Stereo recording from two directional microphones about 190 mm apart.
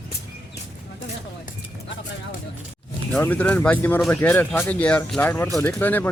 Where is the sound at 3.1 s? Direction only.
10° left (ahead or behind).